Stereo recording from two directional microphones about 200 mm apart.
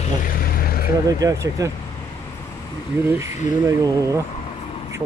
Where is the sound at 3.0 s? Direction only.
10° right (ahead or behind).